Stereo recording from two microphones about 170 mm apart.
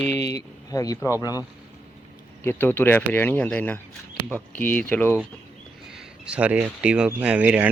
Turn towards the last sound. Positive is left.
turn(degrees=-5)  # may be behind; listen again after turning